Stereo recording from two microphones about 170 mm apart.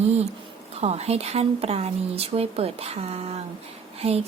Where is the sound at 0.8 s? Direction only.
40° right (ahead or behind).